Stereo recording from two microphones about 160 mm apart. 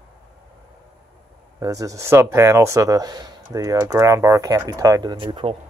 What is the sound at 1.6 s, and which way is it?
Speech, 20° right (ahead or behind).